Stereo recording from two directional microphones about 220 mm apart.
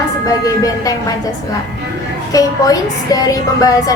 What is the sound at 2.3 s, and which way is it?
A woman's voice, 15° left (ahead or behind).